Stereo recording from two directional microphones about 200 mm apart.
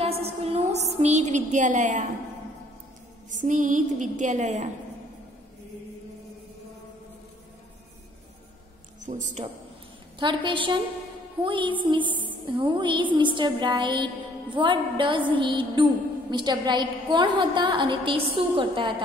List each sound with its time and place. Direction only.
0.0 s music: 30° right (ahead or behind)
3.3 s a woman's voice: 40° right (ahead or behind)
9.0 s a woman's voice: 35° right (ahead or behind)
10.1 s music: 25° right (ahead or behind)